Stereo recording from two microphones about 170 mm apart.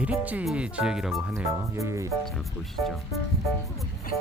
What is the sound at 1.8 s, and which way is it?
Speech, 15° right (ahead or behind).